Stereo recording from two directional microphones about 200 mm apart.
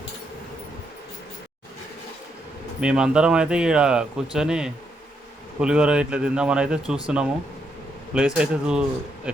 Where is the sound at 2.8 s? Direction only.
5° right (ahead or behind).